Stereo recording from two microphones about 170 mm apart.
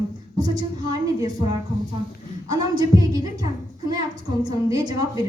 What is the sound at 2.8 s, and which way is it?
A woman's voice, 20° right (ahead or behind).